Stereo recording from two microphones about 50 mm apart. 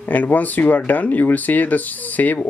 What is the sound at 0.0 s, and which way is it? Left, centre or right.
Speech, left.